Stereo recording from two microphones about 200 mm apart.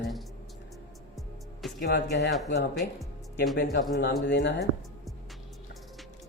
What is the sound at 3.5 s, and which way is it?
Speech, 55° left (ahead or behind).